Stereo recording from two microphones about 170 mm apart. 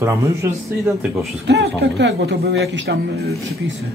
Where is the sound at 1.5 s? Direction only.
85° right.